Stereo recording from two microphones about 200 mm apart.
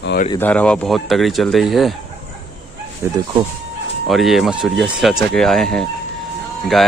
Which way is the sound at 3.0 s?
15° right (ahead or behind).